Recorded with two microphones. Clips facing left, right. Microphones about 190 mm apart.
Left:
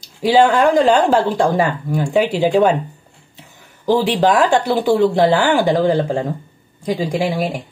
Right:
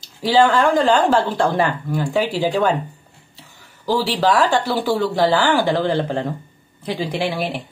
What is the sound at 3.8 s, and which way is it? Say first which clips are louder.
Speech: left 4 dB; 20° left (ahead or behind).